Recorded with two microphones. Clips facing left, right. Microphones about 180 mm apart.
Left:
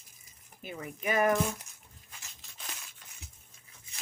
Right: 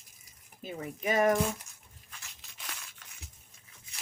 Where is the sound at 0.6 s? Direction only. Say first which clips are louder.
Right 2 dB; 35° right (ahead or behind).